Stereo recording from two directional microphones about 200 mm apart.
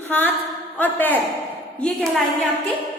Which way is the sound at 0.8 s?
10° left (ahead or behind).